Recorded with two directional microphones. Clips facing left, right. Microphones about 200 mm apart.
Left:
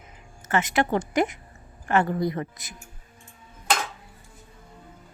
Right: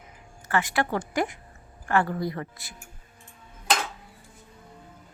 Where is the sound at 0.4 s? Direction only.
20° left (ahead or behind).